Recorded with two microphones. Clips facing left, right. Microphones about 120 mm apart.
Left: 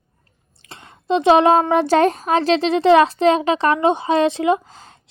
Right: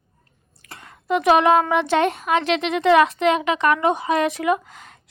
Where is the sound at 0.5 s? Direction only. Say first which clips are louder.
Left 1 dB; 25° left (ahead or behind).